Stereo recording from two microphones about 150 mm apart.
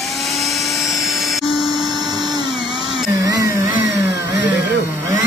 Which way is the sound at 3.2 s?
20° right (ahead or behind).